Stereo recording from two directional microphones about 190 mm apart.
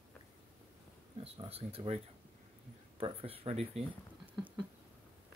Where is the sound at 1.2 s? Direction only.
30° right (ahead or behind).